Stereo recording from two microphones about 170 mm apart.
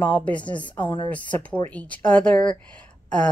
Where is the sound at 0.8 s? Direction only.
30° left (ahead or behind).